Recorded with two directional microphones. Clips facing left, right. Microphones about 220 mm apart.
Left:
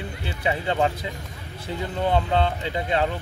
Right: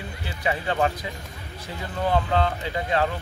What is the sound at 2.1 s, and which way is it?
Speech, 25° left (ahead or behind).